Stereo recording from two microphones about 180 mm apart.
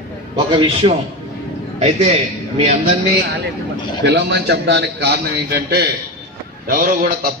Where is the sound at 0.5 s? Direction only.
30° right (ahead or behind).